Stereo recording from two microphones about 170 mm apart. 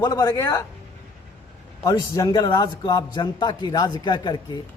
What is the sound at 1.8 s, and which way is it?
A man's voice, 20° left (ahead or behind).